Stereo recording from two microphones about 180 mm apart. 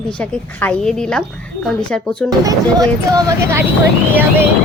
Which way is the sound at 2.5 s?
20° right (ahead or behind).